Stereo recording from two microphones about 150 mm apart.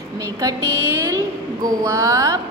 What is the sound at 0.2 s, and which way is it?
A woman's voice, 20° right (ahead or behind).